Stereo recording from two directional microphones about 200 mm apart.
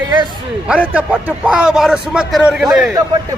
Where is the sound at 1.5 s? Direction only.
5° right (ahead or behind).